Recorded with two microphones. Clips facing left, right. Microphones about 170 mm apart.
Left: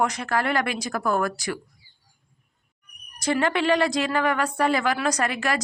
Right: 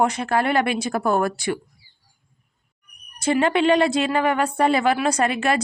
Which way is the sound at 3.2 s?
25° right (ahead or behind).